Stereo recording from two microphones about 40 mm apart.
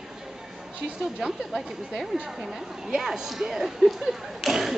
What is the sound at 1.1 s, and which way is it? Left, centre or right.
A woman's voice, centre.